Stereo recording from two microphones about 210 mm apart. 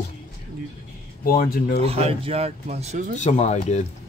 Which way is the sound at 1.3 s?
40° left (ahead or behind).